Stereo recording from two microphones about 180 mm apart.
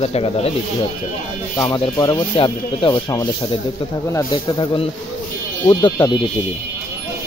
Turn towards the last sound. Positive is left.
turn(degrees=25)  # may be behind; listen again after turning